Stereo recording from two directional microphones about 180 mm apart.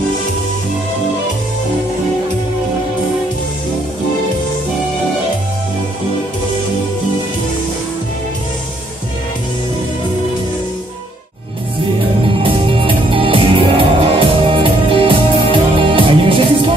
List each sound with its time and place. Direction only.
12.3 s music: 30° right (ahead or behind)